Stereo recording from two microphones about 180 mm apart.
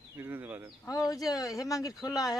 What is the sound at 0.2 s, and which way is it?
Speech, 10° right (ahead or behind).